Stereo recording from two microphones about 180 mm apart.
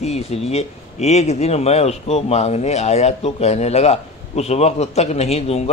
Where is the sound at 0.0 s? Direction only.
35° left (ahead or behind).